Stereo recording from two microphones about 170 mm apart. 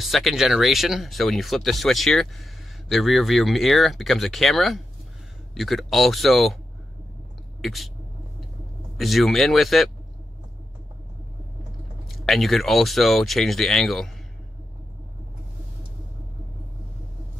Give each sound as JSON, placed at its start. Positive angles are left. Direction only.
{"t": 0.0, "sound": "speech", "side_deg": 0}
{"t": 7.6, "sound": "speech", "side_deg": 0}
{"t": 8.9, "sound": "speech", "side_deg": 0}
{"t": 12.1, "sound": "speech", "side_deg": 0}